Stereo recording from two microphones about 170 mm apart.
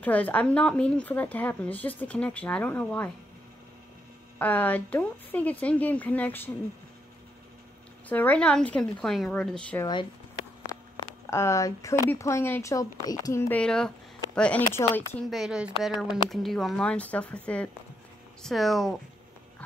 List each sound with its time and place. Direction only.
0.0 s speech: 10° left (ahead or behind)
4.4 s speech: 10° left (ahead or behind)
8.1 s speech: 10° left (ahead or behind)
11.2 s speech: 15° left (ahead or behind)
15.2 s speech: centre (ahead or behind)